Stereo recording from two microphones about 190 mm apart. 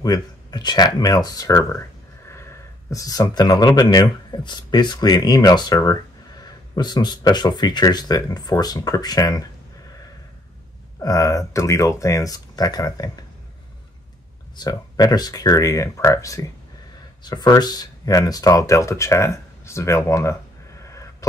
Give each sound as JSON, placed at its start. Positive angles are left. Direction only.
{"t": 0.0, "sound": "speech", "side_deg": 20}
{"t": 11.0, "sound": "speech", "side_deg": 20}
{"t": 14.6, "sound": "speech", "side_deg": 20}